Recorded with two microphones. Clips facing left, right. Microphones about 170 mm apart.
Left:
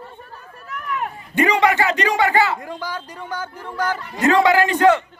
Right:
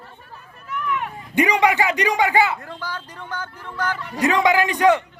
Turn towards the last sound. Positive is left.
turn(degrees=-15)  # may be behind; listen again after turning